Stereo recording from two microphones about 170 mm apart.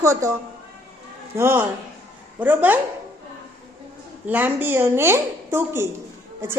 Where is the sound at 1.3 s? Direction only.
15° right (ahead or behind).